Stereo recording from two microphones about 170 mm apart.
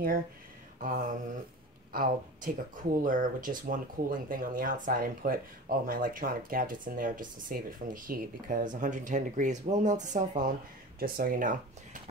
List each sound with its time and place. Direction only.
0.7 s mantra: 50° right (ahead or behind)
1.9 s speech: 55° right (ahead or behind)
11.0 s speech: 60° right (ahead or behind)